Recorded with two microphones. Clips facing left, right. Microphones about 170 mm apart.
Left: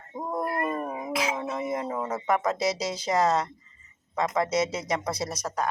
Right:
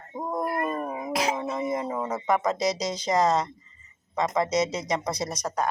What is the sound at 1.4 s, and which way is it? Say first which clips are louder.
Speech: right 2 dB; 5° left (ahead or behind).